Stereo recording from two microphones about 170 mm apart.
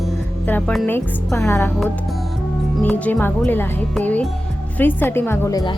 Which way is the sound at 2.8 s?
10° left (ahead or behind).